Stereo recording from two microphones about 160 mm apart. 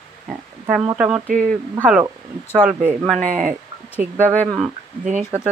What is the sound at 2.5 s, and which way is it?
Speech, 5° right (ahead or behind).